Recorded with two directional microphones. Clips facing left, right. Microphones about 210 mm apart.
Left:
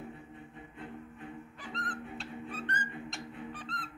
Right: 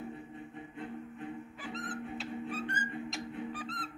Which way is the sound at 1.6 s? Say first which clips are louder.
Right 1 dB; 5° right (ahead or behind).